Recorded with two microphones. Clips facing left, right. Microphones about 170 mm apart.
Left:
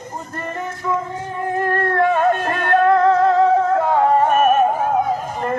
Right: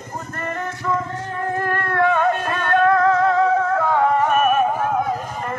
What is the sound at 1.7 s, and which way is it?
Music, 35° left (ahead or behind).